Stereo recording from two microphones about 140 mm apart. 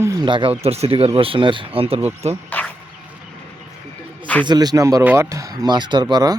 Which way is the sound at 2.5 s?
10° left (ahead or behind).